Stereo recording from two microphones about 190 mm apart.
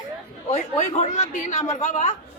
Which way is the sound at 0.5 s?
35° left (ahead or behind).